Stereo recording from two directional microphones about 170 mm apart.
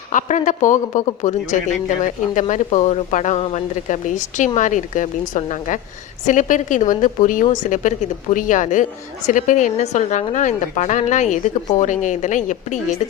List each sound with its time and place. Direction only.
0.1 s a woman's voice: 45° left (ahead or behind)